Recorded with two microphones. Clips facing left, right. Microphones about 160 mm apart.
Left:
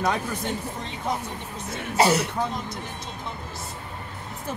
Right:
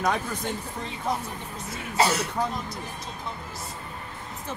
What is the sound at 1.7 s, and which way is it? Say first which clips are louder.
Speech: left 4 dB; 20° left (ahead or behind).